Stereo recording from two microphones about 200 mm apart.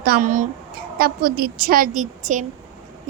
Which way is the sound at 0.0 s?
45° right (ahead or behind).